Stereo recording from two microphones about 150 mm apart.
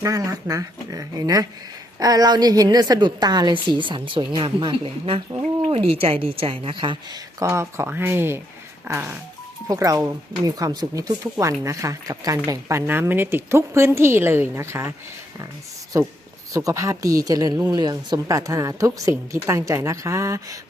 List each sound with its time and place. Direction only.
0.0 s a woman's voice: 25° right (ahead or behind)
9.6 s a woman's voice: 25° right (ahead or behind)
16.5 s a woman's voice: 20° right (ahead or behind)